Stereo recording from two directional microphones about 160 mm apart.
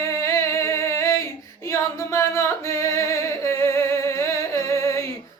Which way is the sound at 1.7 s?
20° left (ahead or behind).